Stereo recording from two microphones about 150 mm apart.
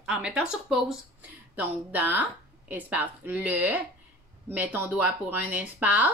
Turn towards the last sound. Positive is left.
turn(degrees=-10)  # may be behind; listen again after turning